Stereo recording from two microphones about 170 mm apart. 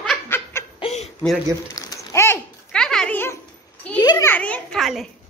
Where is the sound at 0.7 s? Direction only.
35° left (ahead or behind).